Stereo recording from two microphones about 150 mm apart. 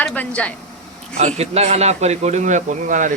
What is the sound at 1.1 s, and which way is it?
A man's voice, 45° right (ahead or behind).